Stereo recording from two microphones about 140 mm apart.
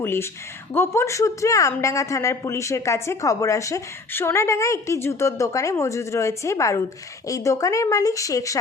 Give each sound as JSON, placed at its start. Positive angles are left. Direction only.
{"t": 0.0, "sound": "a woman's voice", "side_deg": 15}